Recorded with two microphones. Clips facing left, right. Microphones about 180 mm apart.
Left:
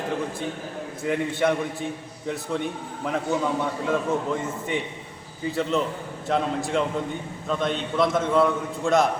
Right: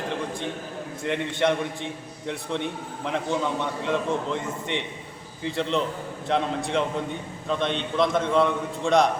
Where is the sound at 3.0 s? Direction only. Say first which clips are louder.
Left 1 dB; 5° left (ahead or behind).